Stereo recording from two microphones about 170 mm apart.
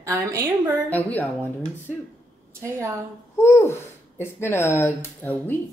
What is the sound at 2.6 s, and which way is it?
Speech, 15° right (ahead or behind).